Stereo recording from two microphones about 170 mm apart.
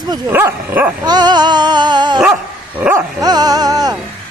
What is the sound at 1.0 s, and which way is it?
Speech, 25° right (ahead or behind).